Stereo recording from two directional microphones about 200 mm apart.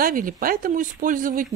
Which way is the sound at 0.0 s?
45° right (ahead or behind).